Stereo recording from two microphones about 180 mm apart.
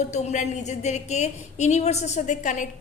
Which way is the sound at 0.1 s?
40° left (ahead or behind).